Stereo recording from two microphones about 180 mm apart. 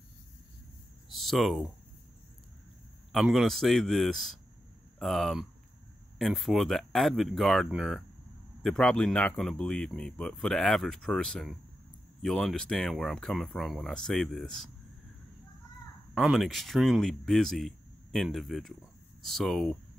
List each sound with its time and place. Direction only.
1.0 s a sound: centre (ahead or behind)
3.1 s speech: centre (ahead or behind)
16.2 s speech: centre (ahead or behind)